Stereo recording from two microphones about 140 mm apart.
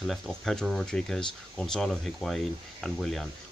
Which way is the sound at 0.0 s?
Centre (ahead or behind).